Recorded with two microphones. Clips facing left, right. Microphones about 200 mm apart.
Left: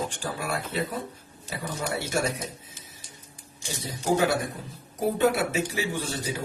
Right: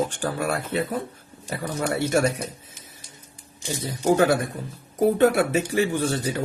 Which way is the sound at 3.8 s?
55° right (ahead or behind).